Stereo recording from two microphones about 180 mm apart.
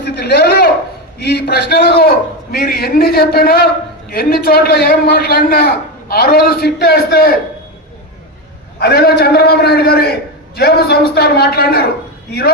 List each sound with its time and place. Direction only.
0.0 s a sound: 65° left (ahead or behind)
1.2 s a man's voice: 65° left (ahead or behind)
8.8 s a man's voice: 60° left (ahead or behind)